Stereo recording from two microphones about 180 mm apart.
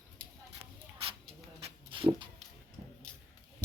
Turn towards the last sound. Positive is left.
turn(degrees=5)  # may be behind; listen again after turning